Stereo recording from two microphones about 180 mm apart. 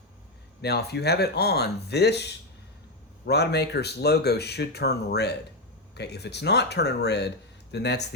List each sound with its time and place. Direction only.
0.6 s speech: 65° left (ahead or behind)